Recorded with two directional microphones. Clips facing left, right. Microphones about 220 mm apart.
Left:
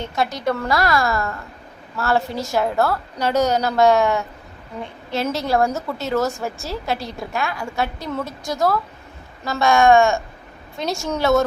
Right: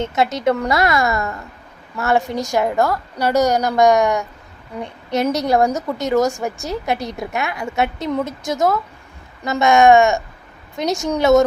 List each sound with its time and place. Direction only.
0.0 s a woman's voice: 20° right (ahead or behind)